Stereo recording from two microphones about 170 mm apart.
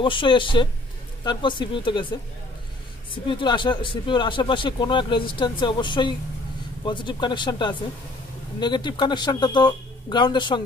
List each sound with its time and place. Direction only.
0.0 s a man's voice: 30° left (ahead or behind)
3.3 s a man's voice: 30° left (ahead or behind)